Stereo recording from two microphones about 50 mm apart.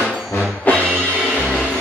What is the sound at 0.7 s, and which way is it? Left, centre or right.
Music, left.